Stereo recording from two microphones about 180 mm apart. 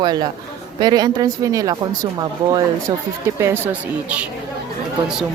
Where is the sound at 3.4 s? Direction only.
10° right (ahead or behind).